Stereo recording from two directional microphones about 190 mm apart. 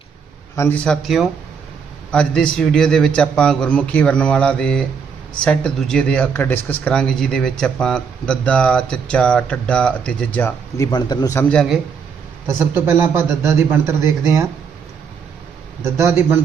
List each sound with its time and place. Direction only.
0.5 s speech: 10° left (ahead or behind)
10.9 s a man's voice: 20° left (ahead or behind)
11.4 s speech: centre (ahead or behind)
12.5 s a man's voice: 10° right (ahead or behind)
15.8 s a man's voice: 15° right (ahead or behind)